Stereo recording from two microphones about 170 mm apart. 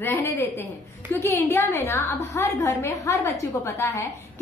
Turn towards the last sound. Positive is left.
turn(degrees=15)  # may be behind; listen again after turning